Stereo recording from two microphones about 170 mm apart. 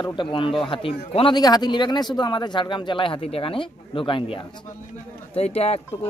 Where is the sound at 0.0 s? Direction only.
30° left (ahead or behind).